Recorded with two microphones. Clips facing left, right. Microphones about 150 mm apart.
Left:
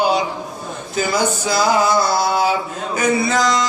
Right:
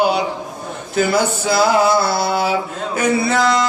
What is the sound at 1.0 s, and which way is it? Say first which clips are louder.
Male singing: right 3 dB; 60° right (ahead or behind).